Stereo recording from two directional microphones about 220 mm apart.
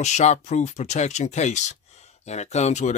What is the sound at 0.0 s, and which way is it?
Speech, 30° left (ahead or behind).